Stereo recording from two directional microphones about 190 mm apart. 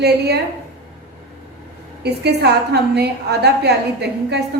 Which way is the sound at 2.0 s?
60° right (ahead or behind).